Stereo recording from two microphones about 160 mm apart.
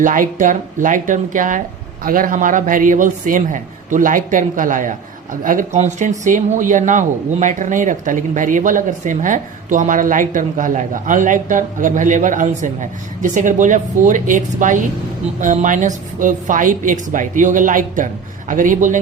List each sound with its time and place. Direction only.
0.0 s a man's voice: 55° right (ahead or behind)